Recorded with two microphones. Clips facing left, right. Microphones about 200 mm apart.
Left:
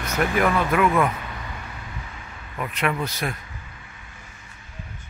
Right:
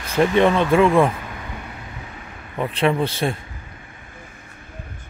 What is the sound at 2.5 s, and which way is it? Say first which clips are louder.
Speech: right 6 dB; 30° right (ahead or behind).